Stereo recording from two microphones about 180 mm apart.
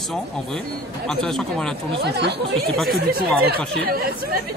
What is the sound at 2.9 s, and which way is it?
Speech, 55° right (ahead or behind).